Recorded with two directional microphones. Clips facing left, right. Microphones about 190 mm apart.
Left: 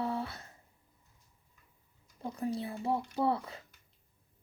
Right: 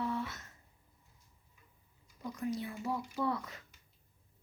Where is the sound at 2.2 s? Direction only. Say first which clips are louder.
Left 2 dB; 30° left (ahead or behind).